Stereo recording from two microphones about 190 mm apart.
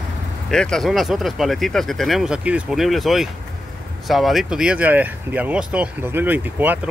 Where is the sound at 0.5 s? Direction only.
5° left (ahead or behind).